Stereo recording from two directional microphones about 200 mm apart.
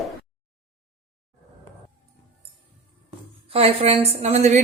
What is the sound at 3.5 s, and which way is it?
A woman's voice, 30° right (ahead or behind).